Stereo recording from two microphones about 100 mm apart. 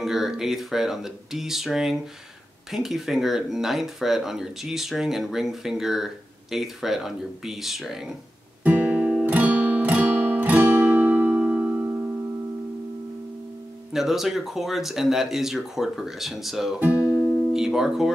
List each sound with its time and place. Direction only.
0.0 s speech: 5° right (ahead or behind)
8.6 s guitar: 15° right (ahead or behind)
13.9 s speech: 5° right (ahead or behind)
16.8 s music: 15° right (ahead or behind)